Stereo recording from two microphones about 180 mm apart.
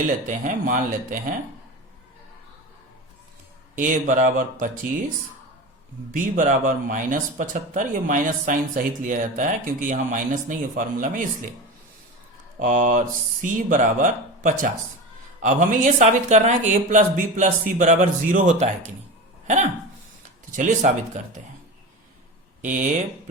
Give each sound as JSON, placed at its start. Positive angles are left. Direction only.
{"t": 0.3, "sound": "speech", "side_deg": -45}
{"t": 3.8, "sound": "speech", "side_deg": -45}
{"t": 6.1, "sound": "speech", "side_deg": -45}
{"t": 12.5, "sound": "speech", "side_deg": -45}
{"t": 20.5, "sound": "speech", "side_deg": -45}
{"t": 22.6, "sound": "speech", "side_deg": -45}